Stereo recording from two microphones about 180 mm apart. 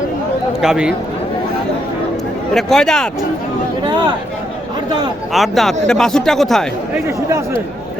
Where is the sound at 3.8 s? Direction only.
25° right (ahead or behind).